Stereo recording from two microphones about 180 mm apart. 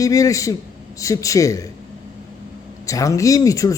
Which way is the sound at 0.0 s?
20° left (ahead or behind).